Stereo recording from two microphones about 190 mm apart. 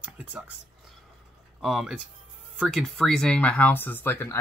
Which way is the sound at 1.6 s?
5° right (ahead or behind).